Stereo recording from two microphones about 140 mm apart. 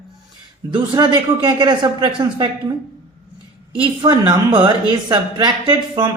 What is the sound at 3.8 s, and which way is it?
A woman's voice, 35° right (ahead or behind).